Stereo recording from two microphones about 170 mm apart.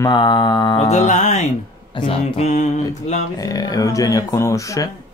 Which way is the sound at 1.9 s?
30° left (ahead or behind).